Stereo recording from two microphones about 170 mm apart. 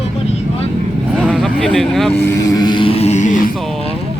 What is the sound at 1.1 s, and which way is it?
Speech, centre (ahead or behind).